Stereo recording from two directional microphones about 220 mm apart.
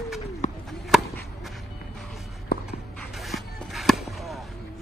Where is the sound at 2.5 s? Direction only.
45° left (ahead or behind).